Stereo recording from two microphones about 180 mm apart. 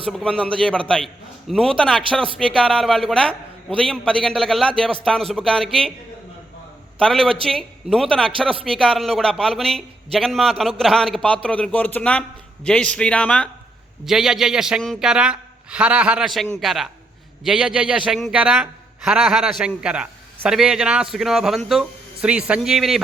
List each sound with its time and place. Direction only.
0.1 s a man's voice: 5° left (ahead or behind)
7.0 s a man's voice: 5° left (ahead or behind)